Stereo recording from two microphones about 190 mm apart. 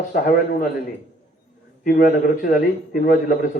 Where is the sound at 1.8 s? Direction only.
45° left (ahead or behind).